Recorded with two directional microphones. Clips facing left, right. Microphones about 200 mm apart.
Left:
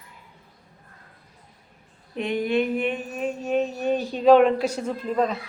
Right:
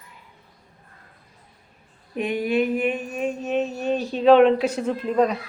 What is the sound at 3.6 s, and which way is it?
Speech, 15° left (ahead or behind).